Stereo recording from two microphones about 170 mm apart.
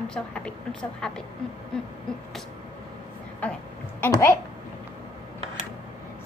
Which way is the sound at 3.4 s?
10° left (ahead or behind).